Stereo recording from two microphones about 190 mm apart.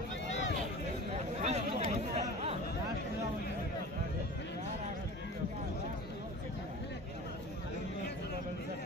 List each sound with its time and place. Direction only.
1.4 s chatter: 35° right (ahead or behind)